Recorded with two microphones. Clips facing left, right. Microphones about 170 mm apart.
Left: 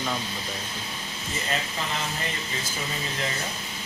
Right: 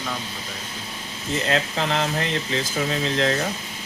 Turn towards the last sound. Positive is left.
turn(degrees=-85)